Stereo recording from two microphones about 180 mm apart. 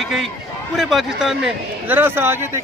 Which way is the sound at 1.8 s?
10° right (ahead or behind).